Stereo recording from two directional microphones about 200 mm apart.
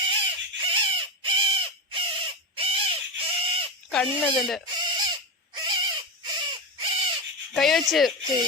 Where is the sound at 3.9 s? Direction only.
5° left (ahead or behind).